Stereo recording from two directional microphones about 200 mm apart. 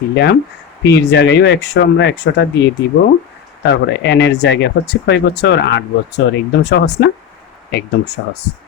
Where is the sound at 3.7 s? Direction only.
60° left (ahead or behind).